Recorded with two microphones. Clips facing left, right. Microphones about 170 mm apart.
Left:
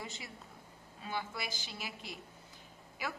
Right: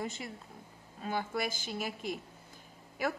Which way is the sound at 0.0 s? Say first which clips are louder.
Right 7 dB; 50° right (ahead or behind).